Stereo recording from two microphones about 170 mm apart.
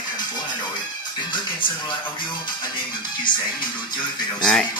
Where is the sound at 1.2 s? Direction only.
25° left (ahead or behind).